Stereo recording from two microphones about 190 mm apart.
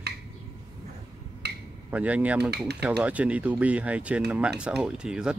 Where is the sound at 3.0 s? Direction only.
5° right (ahead or behind).